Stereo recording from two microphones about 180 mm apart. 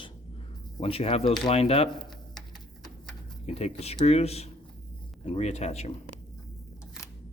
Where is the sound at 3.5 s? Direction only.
35° left (ahead or behind).